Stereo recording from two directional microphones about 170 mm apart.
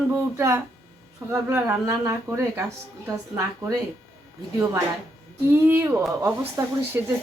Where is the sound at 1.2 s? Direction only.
15° right (ahead or behind).